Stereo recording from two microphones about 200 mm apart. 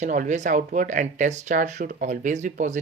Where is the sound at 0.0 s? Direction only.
40° right (ahead or behind).